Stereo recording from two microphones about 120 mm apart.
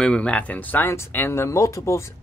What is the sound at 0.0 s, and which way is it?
Speech, 10° left (ahead or behind).